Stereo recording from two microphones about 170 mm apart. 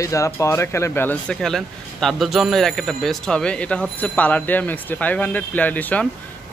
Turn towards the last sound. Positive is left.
turn(degrees=10)  # may be behind; listen again after turning